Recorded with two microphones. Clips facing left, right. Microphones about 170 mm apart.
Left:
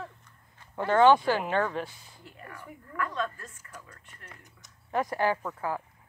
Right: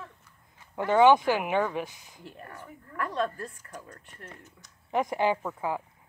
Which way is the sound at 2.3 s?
35° right (ahead or behind).